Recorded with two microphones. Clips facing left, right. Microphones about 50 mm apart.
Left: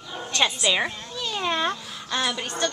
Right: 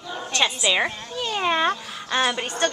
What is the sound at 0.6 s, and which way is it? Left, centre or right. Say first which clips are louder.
Speech: right 2 dB; centre.